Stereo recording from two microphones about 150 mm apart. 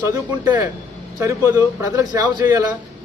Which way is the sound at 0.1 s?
15° right (ahead or behind).